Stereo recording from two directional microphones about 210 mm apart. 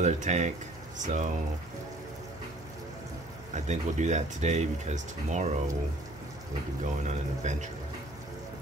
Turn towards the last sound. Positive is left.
turn(degrees=-35)  # may be behind; listen again after turning